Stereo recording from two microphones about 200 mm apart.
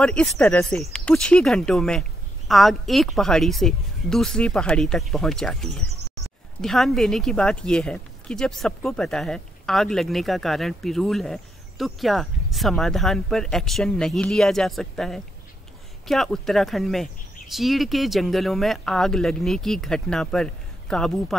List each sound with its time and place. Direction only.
0.0 s speech: 5° left (ahead or behind)